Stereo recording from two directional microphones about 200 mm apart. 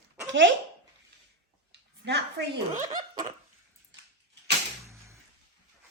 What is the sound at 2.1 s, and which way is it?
Speech, 60° right (ahead or behind).